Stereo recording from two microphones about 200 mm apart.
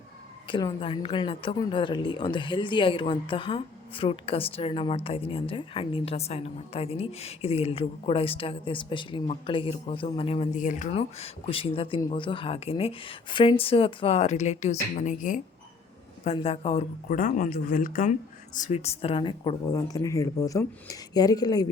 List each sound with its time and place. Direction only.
0.4 s a woman's voice: 25° left (ahead or behind); by 15.4 s 40° left (ahead or behind)
16.2 s a woman's voice: 30° left (ahead or behind)
17.1 s a woman's voice: 45° left (ahead or behind); by 21.7 s 20° left (ahead or behind)